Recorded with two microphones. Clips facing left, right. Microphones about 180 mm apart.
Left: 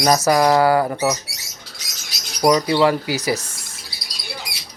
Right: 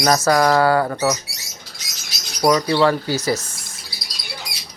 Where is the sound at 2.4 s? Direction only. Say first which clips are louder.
Even; 15° left (ahead or behind).